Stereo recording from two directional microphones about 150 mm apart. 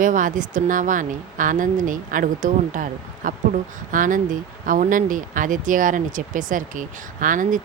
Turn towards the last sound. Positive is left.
turn(degrees=-60)  # may be behind; listen again after turning